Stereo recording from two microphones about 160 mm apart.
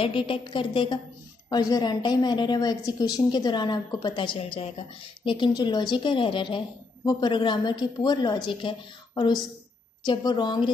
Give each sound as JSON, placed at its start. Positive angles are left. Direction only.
{"t": 0.0, "sound": "a woman's voice", "side_deg": 30}